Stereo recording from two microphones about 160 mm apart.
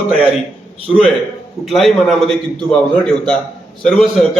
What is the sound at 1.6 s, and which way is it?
A man's voice, centre (ahead or behind).